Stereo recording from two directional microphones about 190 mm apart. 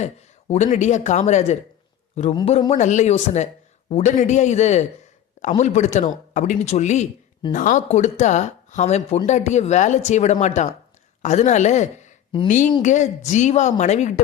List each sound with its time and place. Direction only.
0.0 s speech: 35° left (ahead or behind)
2.3 s speech: 25° left (ahead or behind)